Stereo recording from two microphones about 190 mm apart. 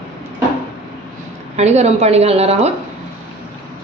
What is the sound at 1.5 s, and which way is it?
A woman's voice, 35° right (ahead or behind).